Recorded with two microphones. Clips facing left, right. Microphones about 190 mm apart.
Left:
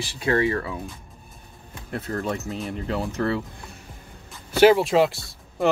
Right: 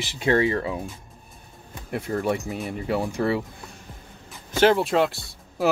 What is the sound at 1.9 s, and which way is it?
Speech, 10° right (ahead or behind).